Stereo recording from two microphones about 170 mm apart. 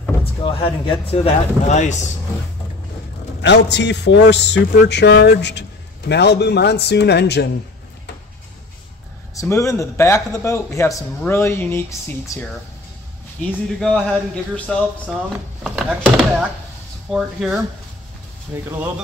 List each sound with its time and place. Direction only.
0.2 s speech: 30° left (ahead or behind)
3.4 s a man's voice: 90° left
9.3 s a man's voice: 20° left (ahead or behind); by 17.6 s centre (ahead or behind)
18.5 s speech: 10° right (ahead or behind)